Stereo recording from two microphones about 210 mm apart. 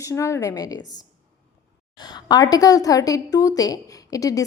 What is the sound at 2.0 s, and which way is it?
A woman's voice, 20° left (ahead or behind).